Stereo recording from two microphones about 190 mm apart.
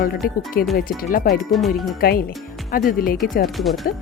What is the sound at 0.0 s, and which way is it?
Speech, 55° left (ahead or behind).